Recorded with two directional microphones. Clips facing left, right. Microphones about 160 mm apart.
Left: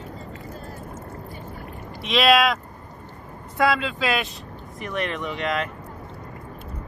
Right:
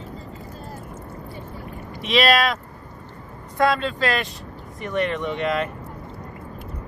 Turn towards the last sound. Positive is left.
turn(degrees=0)  # may be behind; listen again after turning